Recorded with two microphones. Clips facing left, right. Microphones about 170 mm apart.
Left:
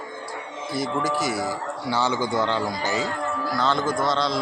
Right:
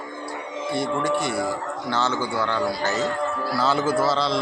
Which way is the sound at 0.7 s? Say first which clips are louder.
Right 1 dB; centre (ahead or behind).